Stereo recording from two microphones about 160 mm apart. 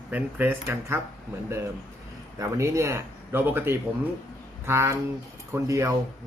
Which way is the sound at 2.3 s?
20° right (ahead or behind).